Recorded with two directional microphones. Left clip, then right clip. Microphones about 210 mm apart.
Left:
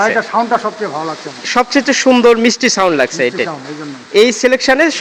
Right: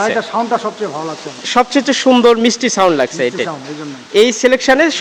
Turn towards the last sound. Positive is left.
turn(degrees=0)  # may be behind; listen again after turning